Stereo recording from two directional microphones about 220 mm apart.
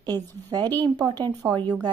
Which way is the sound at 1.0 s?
20° right (ahead or behind).